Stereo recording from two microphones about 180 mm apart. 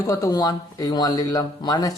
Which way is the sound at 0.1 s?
20° left (ahead or behind).